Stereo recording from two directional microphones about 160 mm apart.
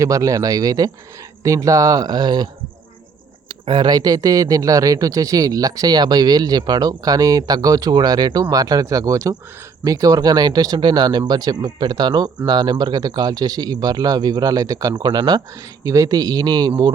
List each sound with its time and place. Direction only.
0.0 s speech: 20° right (ahead or behind)
3.5 s speech: 30° right (ahead or behind)